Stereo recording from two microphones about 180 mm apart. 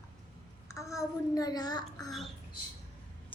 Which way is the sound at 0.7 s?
15° left (ahead or behind).